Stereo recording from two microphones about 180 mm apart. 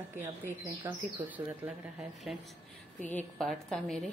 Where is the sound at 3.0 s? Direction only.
10° left (ahead or behind).